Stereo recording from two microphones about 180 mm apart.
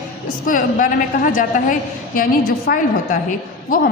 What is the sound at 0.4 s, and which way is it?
A woman's voice, 50° left (ahead or behind).